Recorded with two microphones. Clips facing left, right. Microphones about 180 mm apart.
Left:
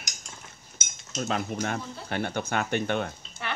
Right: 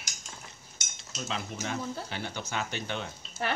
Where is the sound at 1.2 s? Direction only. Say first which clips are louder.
Left 7 dB; 55° left (ahead or behind).